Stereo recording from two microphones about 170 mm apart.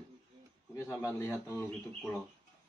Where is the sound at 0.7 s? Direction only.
20° left (ahead or behind).